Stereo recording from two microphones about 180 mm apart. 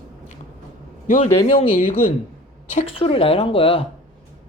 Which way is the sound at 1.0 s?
45° left (ahead or behind).